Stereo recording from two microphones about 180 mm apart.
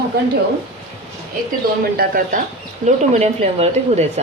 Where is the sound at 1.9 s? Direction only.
50° right (ahead or behind).